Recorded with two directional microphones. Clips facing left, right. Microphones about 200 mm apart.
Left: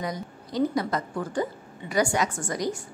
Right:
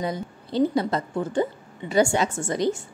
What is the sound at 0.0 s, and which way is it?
Speech, 30° right (ahead or behind).